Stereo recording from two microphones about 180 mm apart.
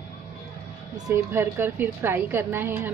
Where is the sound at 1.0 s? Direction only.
15° right (ahead or behind).